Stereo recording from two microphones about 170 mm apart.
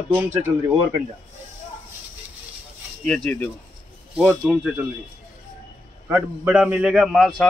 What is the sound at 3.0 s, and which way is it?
A man's voice, 10° left (ahead or behind).